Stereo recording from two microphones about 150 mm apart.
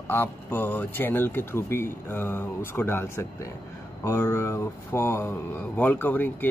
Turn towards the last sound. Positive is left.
turn(degrees=10)  # may be behind; listen again after turning